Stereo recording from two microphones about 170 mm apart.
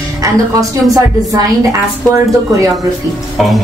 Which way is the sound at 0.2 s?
20° right (ahead or behind).